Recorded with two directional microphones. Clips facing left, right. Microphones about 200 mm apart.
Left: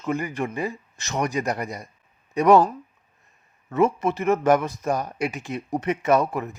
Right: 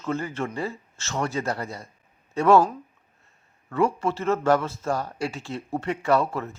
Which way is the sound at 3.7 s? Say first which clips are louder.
Left 3 dB; 20° left (ahead or behind).